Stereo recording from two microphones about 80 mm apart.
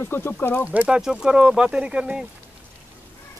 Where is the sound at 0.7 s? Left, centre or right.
Centre.